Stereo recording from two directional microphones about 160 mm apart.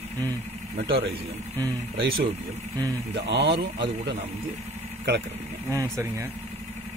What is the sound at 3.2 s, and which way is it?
Speech, 90° right.